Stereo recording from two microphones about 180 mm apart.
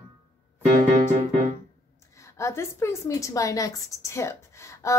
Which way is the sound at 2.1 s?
15° left (ahead or behind).